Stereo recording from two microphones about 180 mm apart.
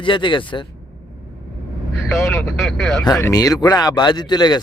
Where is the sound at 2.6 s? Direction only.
Centre (ahead or behind).